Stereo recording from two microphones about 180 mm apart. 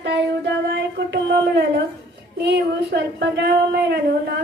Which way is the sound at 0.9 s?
70° right (ahead or behind).